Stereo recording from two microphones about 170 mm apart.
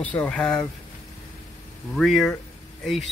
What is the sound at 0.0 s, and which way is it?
Speech, 10° left (ahead or behind).